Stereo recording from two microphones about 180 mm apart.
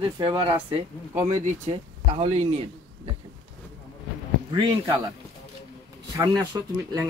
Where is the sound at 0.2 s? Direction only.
25° right (ahead or behind).